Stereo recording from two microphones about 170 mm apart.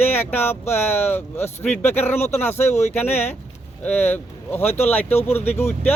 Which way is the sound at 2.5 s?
40° left (ahead or behind).